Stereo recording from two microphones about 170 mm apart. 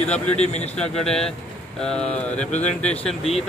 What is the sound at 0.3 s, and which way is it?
Speech, 40° left (ahead or behind).